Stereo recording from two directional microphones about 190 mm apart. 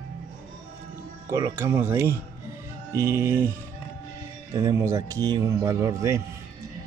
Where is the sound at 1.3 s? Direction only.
15° right (ahead or behind).